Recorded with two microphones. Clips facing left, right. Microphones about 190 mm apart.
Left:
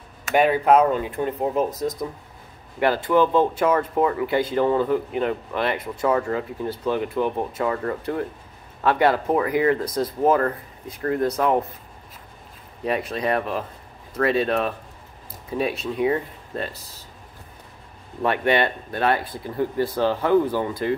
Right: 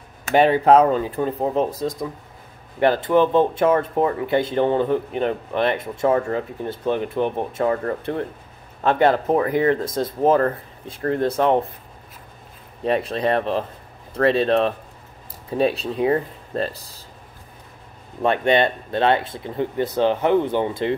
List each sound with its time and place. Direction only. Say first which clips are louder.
0.7 s speech: right 3 dB; 35° right (ahead or behind)
2.8 s speech: right 2 dB; 20° right (ahead or behind)
12.8 s speech: right 3 dB; 30° right (ahead or behind)
18.2 s speech: right 3 dB; 25° right (ahead or behind)